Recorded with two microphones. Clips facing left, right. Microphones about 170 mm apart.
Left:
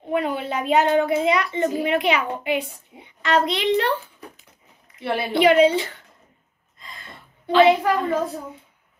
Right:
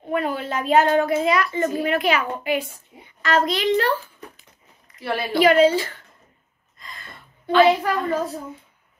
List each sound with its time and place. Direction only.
0.1 s a woman's voice: 15° left (ahead or behind)
5.0 s a woman's voice: 25° left (ahead or behind)
7.1 s a sound: 20° left (ahead or behind)